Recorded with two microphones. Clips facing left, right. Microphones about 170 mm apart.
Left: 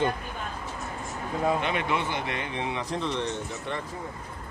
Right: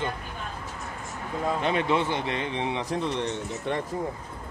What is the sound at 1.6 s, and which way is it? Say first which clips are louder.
A man's voice: right 3 dB; 35° right (ahead or behind).